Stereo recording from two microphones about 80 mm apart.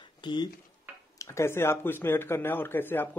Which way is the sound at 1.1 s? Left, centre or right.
Left.